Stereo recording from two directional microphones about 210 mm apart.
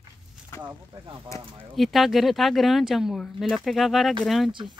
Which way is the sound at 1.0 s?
20° right (ahead or behind).